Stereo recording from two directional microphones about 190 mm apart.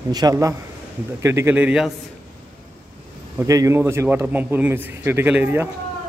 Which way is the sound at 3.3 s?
15° right (ahead or behind).